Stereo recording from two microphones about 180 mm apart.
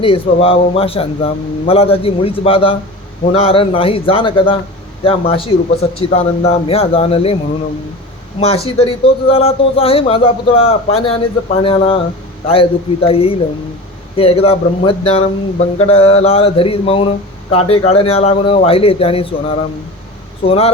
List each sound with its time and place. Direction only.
0.0 s speech: 30° left (ahead or behind)
8.4 s speech: 35° left (ahead or behind)
20.4 s speech: 35° left (ahead or behind)